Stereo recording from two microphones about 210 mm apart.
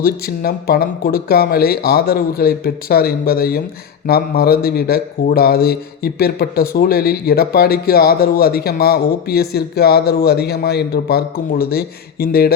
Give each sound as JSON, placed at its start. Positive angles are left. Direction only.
{"t": 0.0, "sound": "a man's voice", "side_deg": 45}